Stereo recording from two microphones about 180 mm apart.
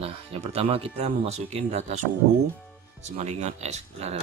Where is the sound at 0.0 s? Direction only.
35° right (ahead or behind).